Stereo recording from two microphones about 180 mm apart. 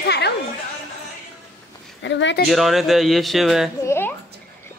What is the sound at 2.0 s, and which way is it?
Speech, 90° left.